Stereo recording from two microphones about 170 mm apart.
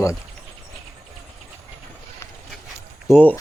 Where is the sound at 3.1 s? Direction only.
15° left (ahead or behind).